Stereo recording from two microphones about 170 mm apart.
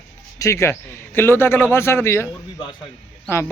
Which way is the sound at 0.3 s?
15° left (ahead or behind).